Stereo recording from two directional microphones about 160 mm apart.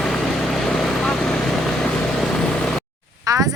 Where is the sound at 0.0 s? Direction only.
Centre (ahead or behind).